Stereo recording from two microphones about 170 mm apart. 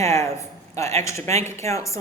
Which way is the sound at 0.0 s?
15° left (ahead or behind).